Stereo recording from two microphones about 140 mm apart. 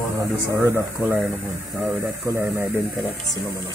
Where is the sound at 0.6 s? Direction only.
15° right (ahead or behind).